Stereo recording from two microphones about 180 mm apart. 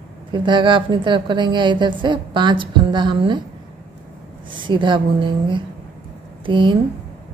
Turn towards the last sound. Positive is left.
turn(degrees=-25)  # may be behind; listen again after turning